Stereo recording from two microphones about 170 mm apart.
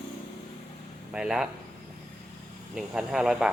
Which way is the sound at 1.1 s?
5° right (ahead or behind).